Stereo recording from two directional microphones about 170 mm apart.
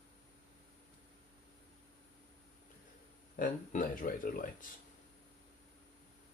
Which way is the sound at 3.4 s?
50° left (ahead or behind).